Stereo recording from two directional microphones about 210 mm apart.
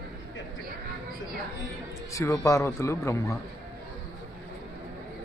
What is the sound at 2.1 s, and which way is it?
A man's voice, 15° left (ahead or behind).